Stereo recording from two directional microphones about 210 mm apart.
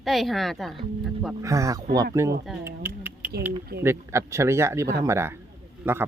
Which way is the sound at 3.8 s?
10° right (ahead or behind).